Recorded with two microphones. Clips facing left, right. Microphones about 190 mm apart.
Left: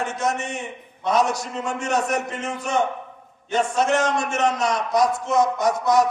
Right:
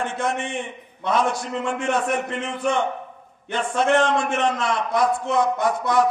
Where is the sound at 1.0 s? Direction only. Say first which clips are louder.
Left 1 dB; 40° left (ahead or behind).